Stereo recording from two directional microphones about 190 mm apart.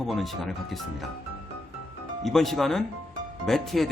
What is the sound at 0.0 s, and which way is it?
Speech, centre (ahead or behind).